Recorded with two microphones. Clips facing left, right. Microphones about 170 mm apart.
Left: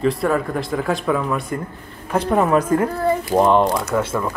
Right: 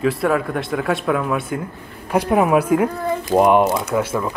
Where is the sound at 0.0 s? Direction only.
Centre (ahead or behind).